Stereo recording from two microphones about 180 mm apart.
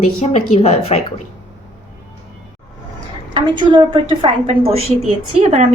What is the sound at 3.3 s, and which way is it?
A woman's voice, 25° right (ahead or behind).